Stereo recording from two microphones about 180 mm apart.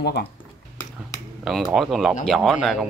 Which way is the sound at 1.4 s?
Centre (ahead or behind).